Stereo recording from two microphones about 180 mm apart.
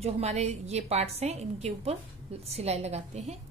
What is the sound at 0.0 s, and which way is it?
A woman's voice, 35° right (ahead or behind).